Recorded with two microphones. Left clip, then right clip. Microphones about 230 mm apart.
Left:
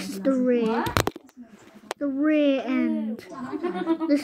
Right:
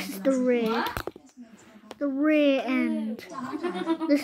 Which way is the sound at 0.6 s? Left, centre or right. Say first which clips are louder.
Left 2 dB; right.